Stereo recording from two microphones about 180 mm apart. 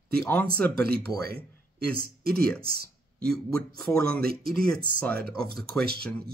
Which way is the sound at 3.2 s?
5° left (ahead or behind).